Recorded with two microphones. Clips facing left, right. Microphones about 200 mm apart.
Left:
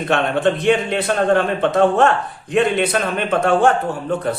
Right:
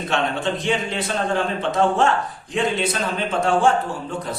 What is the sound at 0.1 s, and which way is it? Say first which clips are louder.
A man's voice: left 6 dB; 60° left (ahead or behind).